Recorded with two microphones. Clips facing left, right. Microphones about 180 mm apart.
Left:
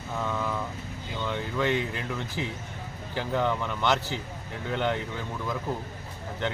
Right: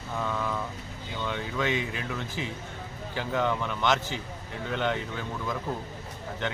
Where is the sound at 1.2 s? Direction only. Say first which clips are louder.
Left 1 dB; 10° left (ahead or behind).